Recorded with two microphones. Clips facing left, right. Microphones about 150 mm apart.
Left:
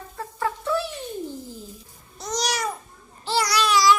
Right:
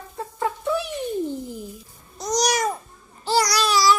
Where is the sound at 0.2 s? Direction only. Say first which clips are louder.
Right 1 dB; 20° right (ahead or behind).